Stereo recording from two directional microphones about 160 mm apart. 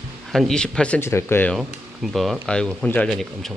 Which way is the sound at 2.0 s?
Centre (ahead or behind).